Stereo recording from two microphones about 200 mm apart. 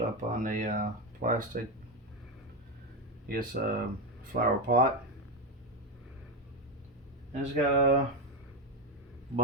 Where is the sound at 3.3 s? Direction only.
45° right (ahead or behind).